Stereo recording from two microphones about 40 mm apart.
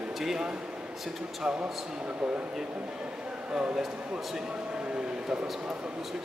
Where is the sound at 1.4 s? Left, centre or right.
Right.